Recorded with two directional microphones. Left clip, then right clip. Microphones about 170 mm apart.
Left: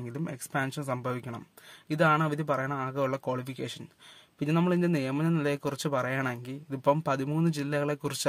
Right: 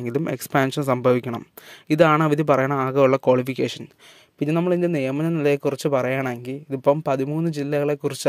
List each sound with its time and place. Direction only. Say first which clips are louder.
0.0 s speech: right 13 dB; 50° right (ahead or behind)
4.4 s a man's voice: right 7 dB; 25° right (ahead or behind)